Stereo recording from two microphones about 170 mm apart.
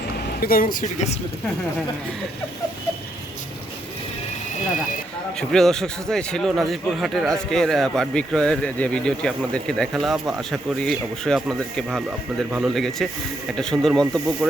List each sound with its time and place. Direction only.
0.3 s speech: 60° left (ahead or behind)
5.4 s a man's voice: centre (ahead or behind)